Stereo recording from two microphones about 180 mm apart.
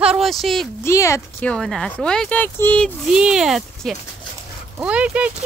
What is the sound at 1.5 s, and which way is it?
Speech, 5° left (ahead or behind).